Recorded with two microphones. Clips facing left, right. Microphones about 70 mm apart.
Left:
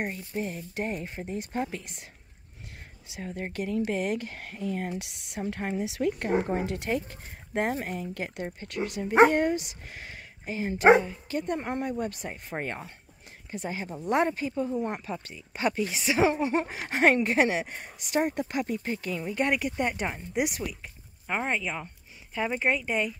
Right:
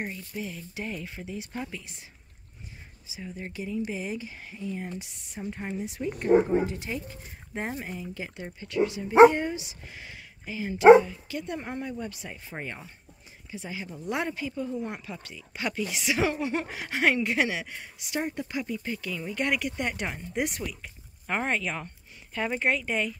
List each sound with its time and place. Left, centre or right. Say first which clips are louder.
0.1 s speech: left 3 dB; left
3.2 s speech: left 4 dB; left
5.9 s speech: right 6 dB; left
16.8 s speech: left 2 dB; left
18.9 s speech: left 2 dB; left
20.0 s speech: left 2 dB; centre